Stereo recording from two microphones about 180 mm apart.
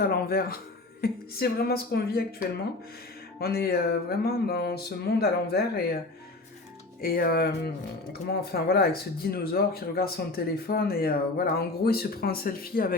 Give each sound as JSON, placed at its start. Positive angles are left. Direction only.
{"t": 0.0, "sound": "speech", "side_deg": 55}
{"t": 3.4, "sound": "speech", "side_deg": 60}
{"t": 7.0, "sound": "speech", "side_deg": 55}